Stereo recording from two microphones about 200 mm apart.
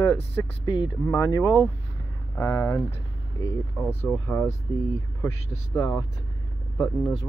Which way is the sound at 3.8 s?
10° left (ahead or behind).